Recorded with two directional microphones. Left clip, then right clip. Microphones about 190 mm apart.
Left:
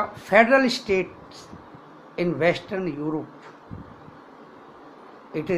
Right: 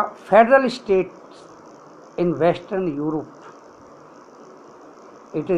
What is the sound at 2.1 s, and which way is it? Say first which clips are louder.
Speech: right 3 dB; 15° left (ahead or behind).